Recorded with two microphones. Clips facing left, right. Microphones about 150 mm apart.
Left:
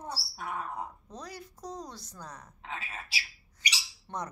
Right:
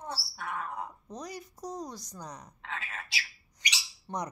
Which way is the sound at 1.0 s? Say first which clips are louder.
Right 3 dB; 15° right (ahead or behind).